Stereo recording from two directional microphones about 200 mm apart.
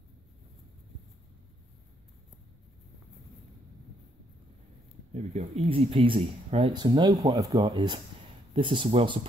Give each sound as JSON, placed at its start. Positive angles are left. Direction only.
{"t": 5.1, "sound": "speech", "side_deg": -30}